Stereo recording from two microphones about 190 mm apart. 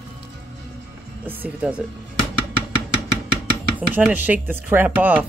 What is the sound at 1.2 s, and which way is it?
Speech, 10° right (ahead or behind).